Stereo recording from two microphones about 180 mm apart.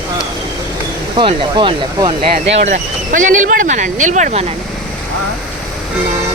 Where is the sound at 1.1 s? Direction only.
30° right (ahead or behind).